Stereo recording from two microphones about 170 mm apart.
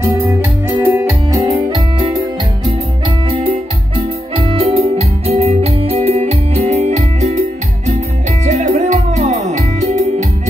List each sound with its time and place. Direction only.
0.8 s keyboard: 15° right (ahead or behind)
3.3 s music: 35° right (ahead or behind)
8.5 s music: 45° right (ahead or behind)